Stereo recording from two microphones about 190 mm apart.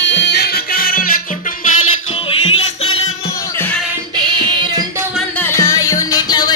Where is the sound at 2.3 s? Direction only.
30° left (ahead or behind).